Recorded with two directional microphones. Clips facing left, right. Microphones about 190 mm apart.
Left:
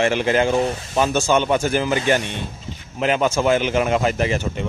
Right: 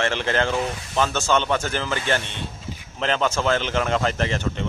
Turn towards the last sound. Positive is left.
turn(degrees=10)  # may be behind; listen again after turning